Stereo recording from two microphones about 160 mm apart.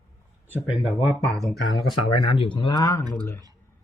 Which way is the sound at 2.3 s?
30° left (ahead or behind).